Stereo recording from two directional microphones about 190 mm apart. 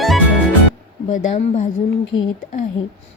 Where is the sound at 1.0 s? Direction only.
40° left (ahead or behind).